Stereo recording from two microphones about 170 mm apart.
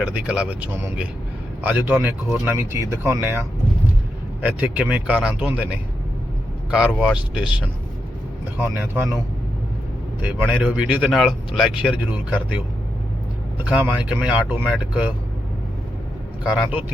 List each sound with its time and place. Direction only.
0.0 s speech: 5° right (ahead or behind)
4.4 s speech: 10° right (ahead or behind)
6.7 s speech: 5° right (ahead or behind)
8.5 s speech: 10° right (ahead or behind)
10.2 s speech: 10° right (ahead or behind)
13.7 s speech: 10° right (ahead or behind)
16.4 s speech: 5° right (ahead or behind)